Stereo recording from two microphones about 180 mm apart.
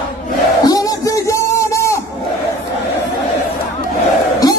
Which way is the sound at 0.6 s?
20° left (ahead or behind).